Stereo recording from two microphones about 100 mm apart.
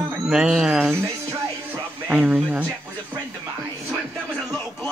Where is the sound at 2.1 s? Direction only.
15° right (ahead or behind).